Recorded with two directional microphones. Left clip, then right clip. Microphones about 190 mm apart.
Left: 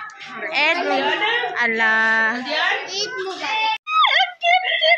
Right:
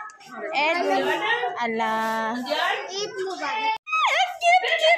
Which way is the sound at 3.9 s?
10° right (ahead or behind).